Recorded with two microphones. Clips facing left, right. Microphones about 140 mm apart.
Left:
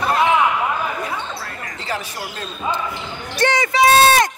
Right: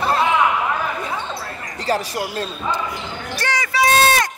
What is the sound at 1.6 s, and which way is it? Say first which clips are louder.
Speech: right 7 dB; 35° right (ahead or behind).